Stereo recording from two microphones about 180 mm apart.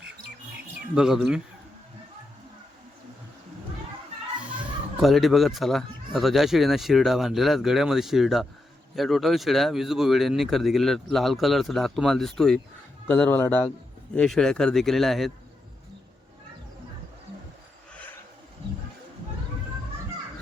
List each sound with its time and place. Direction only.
0.9 s speech: 5° right (ahead or behind)
4.9 s a man's voice: centre (ahead or behind)
17.9 s horse: 10° left (ahead or behind)